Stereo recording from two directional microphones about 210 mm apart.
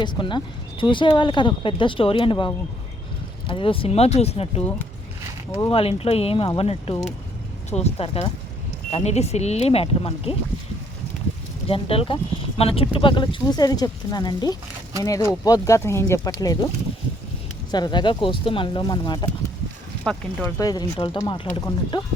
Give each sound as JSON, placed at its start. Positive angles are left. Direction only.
{"t": 0.0, "sound": "speech", "side_deg": 20}
{"t": 11.7, "sound": "speech", "side_deg": 25}
{"t": 17.7, "sound": "speech", "side_deg": 20}
{"t": 20.1, "sound": "speech", "side_deg": 5}
{"t": 20.6, "sound": "speech", "side_deg": 15}